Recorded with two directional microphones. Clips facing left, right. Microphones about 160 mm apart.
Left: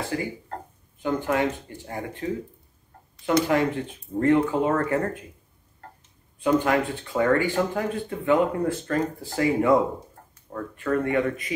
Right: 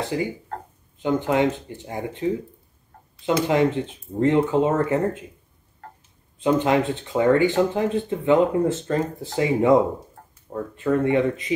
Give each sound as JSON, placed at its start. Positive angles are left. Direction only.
{"t": 0.1, "sound": "speech", "side_deg": -20}
{"t": 3.3, "sound": "speech", "side_deg": -20}
{"t": 6.4, "sound": "speech", "side_deg": -20}